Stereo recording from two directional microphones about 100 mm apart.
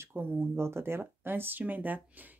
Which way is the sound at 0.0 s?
20° right (ahead or behind).